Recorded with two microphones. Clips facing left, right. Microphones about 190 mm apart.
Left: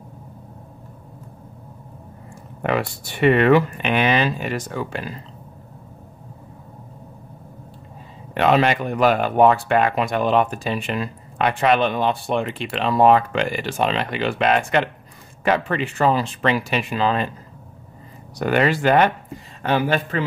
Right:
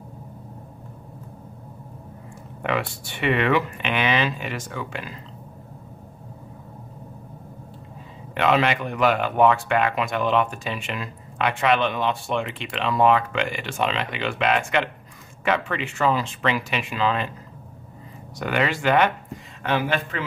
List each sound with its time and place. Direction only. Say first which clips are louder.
2.6 s speech: left 3 dB; 40° left (ahead or behind)
8.4 s speech: left 3 dB; 35° left (ahead or behind)
18.4 s speech: left 5 dB; 40° left (ahead or behind)